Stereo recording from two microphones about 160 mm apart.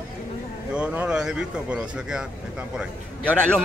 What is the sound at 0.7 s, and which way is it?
Speech, 5° right (ahead or behind).